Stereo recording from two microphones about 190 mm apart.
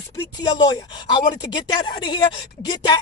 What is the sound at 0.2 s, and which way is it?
Speech, 20° left (ahead or behind).